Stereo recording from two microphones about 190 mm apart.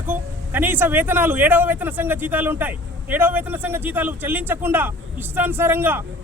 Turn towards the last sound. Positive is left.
turn(degrees=-10)  # may be behind; listen again after turning